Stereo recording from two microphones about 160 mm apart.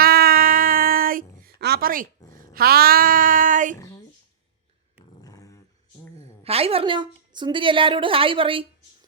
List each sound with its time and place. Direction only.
0.0 s a sound: 70° right (ahead or behind)
2.2 s speech: 20° left (ahead or behind)
2.5 s speech: 75° right (ahead or behind); by 3.8 s 55° right (ahead or behind)
3.8 s a sound: 20° left (ahead or behind)
5.2 s dog: 20° left (ahead or behind)
6.4 s a woman's voice: 40° right (ahead or behind)